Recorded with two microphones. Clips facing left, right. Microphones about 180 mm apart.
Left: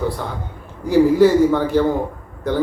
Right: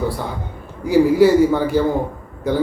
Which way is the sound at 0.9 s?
10° right (ahead or behind).